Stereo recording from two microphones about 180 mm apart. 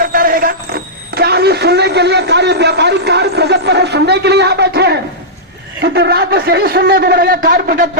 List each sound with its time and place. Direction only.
0.0 s speech: 50° right (ahead or behind)